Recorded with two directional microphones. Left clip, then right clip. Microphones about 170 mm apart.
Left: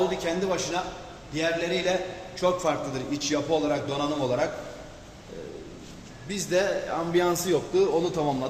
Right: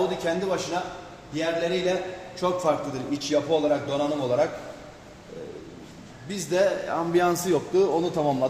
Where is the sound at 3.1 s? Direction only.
55° right (ahead or behind).